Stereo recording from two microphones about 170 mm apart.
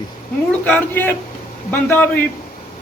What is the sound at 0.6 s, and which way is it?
Speech, 10° left (ahead or behind).